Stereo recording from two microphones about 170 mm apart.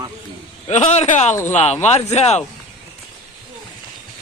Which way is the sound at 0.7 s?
40° left (ahead or behind).